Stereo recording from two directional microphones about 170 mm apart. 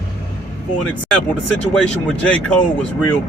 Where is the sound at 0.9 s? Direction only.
5° left (ahead or behind).